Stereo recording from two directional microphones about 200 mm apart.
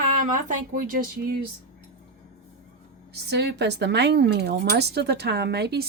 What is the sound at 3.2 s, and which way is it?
A woman's voice, 55° right (ahead or behind).